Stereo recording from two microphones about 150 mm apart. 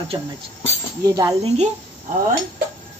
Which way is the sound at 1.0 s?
25° right (ahead or behind).